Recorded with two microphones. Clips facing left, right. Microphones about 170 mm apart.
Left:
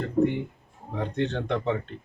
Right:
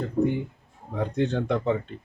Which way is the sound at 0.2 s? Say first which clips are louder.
Left 1 dB; 25° left (ahead or behind).